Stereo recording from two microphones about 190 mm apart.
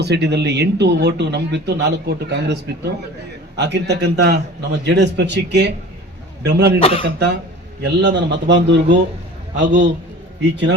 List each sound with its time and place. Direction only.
0.0 s a man's voice: 60° right (ahead or behind)
6.7 s speech: 30° left (ahead or behind)
7.0 s a man's voice: 65° right (ahead or behind)